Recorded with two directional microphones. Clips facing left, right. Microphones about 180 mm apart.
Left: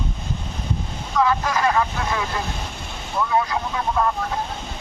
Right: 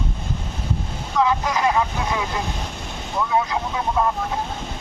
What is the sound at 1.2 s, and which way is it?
Speech, 15° right (ahead or behind).